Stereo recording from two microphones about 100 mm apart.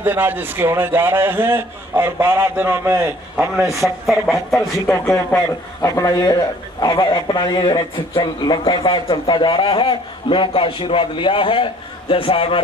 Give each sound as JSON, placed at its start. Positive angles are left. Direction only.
{"t": 0.0, "sound": "a man's voice", "side_deg": -20}
{"t": 3.8, "sound": "speech", "side_deg": 0}
{"t": 4.6, "sound": "a man's voice", "side_deg": 20}
{"t": 5.1, "sound": "a man's voice", "side_deg": 30}
{"t": 6.8, "sound": "a man's voice", "side_deg": 55}